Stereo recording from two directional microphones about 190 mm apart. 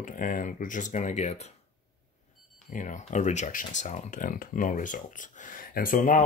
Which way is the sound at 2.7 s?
40° left (ahead or behind).